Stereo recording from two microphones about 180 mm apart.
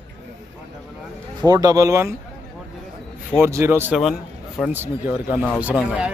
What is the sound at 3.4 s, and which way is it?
Speech, 15° right (ahead or behind).